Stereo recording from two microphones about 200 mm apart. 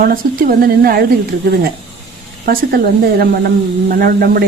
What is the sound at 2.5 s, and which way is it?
A woman's voice, 50° right (ahead or behind).